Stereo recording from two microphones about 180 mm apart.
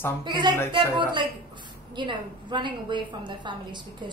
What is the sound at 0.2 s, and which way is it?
Speech, 25° right (ahead or behind).